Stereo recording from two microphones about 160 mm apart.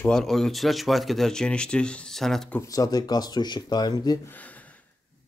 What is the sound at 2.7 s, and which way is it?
Speech, 25° left (ahead or behind).